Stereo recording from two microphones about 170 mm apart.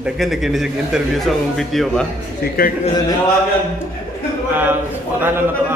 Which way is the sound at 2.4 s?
70° left (ahead or behind).